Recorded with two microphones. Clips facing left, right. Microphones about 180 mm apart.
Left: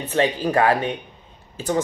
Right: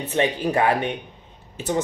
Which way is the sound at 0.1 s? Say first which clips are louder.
Left 2 dB; 20° right (ahead or behind).